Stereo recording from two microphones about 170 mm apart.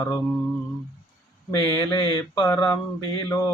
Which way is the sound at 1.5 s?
20° left (ahead or behind).